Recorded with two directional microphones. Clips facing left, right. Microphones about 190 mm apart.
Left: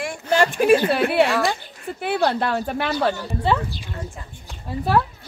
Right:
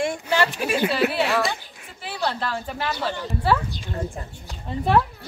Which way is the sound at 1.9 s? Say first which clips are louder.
Left 7 dB; 60° left (ahead or behind).